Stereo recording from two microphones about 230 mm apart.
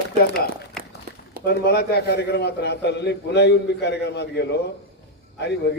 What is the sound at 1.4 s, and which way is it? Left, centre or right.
A man's voice, left.